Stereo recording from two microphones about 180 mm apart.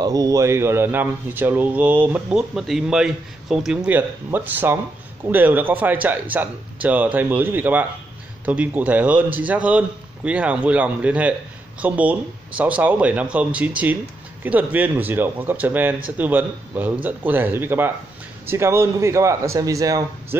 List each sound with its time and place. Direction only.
0.0 s speech: 20° right (ahead or behind)